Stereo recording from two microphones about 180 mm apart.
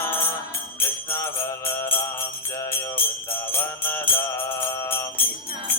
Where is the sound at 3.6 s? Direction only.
10° left (ahead or behind).